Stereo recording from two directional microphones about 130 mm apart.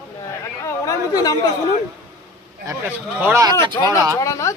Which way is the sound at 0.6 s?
30° left (ahead or behind).